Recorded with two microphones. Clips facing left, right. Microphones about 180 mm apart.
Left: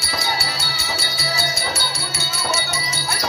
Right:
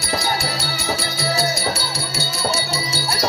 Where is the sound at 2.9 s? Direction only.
35° right (ahead or behind).